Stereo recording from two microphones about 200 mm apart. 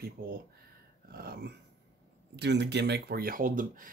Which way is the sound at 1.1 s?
50° right (ahead or behind).